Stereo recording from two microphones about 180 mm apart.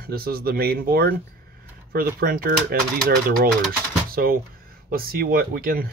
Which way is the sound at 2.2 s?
55° right (ahead or behind).